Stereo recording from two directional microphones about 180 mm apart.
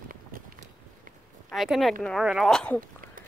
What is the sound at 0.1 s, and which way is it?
Walk, 50° right (ahead or behind).